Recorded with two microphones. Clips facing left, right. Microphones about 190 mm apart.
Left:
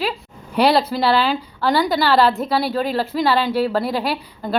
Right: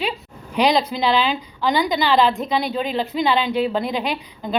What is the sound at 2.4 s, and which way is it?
Speech, 5° left (ahead or behind).